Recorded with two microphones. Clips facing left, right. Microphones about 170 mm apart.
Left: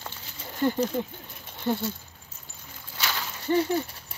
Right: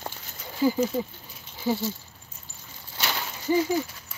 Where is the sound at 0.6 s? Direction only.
5° right (ahead or behind).